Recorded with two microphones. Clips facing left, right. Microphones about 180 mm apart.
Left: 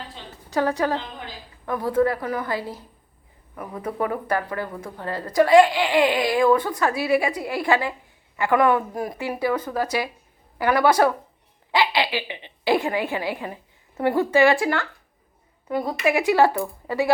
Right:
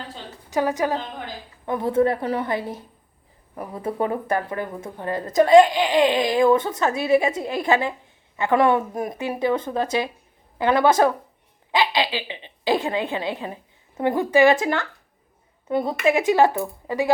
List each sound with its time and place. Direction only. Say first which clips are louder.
0.5 s a woman's voice: even; 15° right (ahead or behind)